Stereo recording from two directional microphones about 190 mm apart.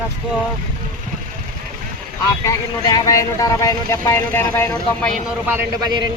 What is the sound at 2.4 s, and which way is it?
Speech, 20° left (ahead or behind).